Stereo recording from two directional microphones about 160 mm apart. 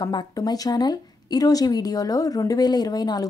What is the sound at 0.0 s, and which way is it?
A woman's voice, 25° left (ahead or behind).